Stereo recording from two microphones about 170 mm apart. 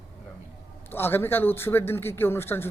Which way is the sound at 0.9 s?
15° left (ahead or behind).